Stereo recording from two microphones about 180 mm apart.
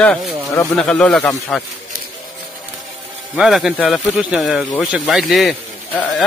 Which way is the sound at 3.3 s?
Centre (ahead or behind).